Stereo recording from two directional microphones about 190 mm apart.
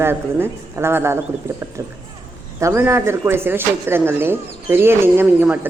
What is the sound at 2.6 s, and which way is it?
Speech, 15° right (ahead or behind).